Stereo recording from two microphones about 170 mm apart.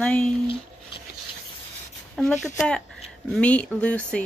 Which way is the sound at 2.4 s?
5° left (ahead or behind).